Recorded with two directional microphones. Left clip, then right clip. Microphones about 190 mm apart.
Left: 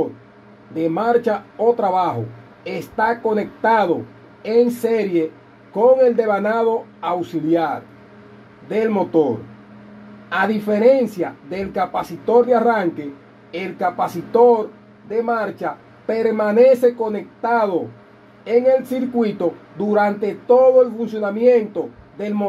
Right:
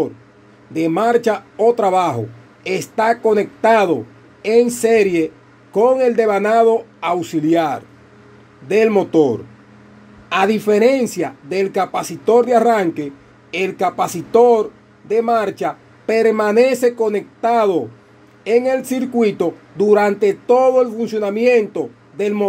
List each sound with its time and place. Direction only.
0.7 s speech: 45° right (ahead or behind)
10.3 s speech: 50° right (ahead or behind)